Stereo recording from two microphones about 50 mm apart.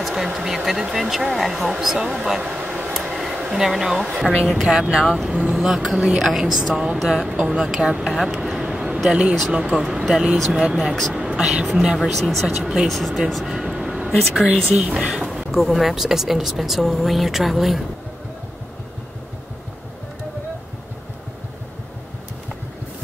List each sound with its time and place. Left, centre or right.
0.0 s speech: centre
2.4 s a sound: right
2.9 s a sound: centre
3.5 s speech: centre
7.2 s speech: centre
8.1 s a sound: centre
9.5 s speech: centre
11.1 s a sound: centre
12.0 s speech: centre
13.5 s vehicle: centre
14.1 s speech: centre
14.7 s speech: right
15.5 s speech: centre